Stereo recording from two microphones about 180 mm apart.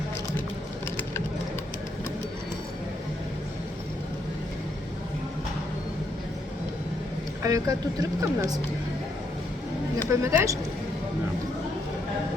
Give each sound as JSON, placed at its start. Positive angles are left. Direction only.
{"t": 7.4, "sound": "speech", "side_deg": -20}
{"t": 10.1, "sound": "speech", "side_deg": -15}